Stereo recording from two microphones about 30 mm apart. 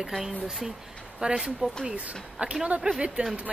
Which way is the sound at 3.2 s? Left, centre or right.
Right.